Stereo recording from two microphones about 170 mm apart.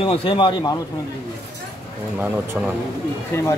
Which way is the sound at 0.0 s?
30° left (ahead or behind).